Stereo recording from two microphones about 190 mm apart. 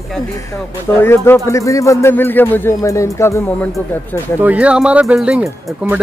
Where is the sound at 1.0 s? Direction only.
10° left (ahead or behind).